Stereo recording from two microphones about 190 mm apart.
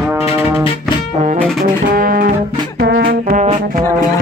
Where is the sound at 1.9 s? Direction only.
50° right (ahead or behind).